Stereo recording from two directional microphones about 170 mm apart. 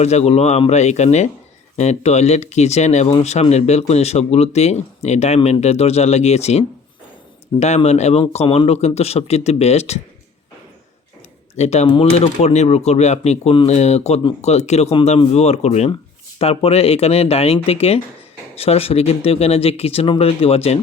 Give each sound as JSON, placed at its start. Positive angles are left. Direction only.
{"t": 0.0, "sound": "speech", "side_deg": 40}
{"t": 11.5, "sound": "speech", "side_deg": 40}